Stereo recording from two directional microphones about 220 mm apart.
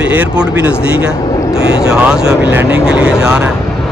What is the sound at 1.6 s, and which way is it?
Speech, 25° left (ahead or behind).